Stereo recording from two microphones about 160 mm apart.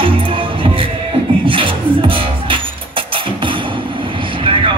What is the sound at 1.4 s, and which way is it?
Beatboxing, 30° right (ahead or behind).